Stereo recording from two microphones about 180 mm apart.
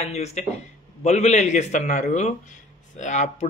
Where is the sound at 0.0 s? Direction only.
40° left (ahead or behind).